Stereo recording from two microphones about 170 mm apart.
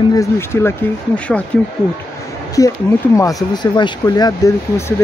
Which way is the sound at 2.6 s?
20° left (ahead or behind).